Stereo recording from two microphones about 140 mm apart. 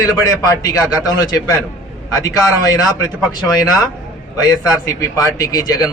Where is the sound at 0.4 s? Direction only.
25° left (ahead or behind).